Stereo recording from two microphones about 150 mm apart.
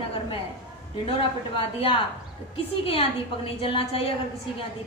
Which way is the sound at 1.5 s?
35° left (ahead or behind).